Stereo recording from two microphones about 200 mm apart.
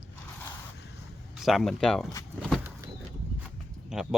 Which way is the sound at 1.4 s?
Centre (ahead or behind).